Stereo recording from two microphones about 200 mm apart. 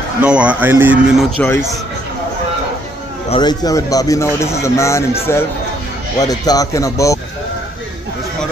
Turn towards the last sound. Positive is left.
turn(degrees=15)  # may be behind; listen again after turning